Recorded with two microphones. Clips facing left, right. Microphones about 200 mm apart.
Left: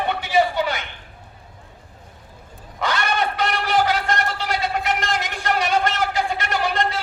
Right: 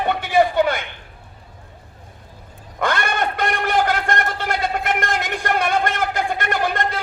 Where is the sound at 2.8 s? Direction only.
50° right (ahead or behind).